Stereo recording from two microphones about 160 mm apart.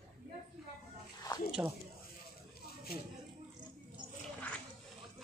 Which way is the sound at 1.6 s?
15° right (ahead or behind).